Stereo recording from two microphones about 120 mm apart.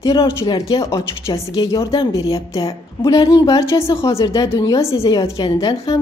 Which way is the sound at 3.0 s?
35° left (ahead or behind).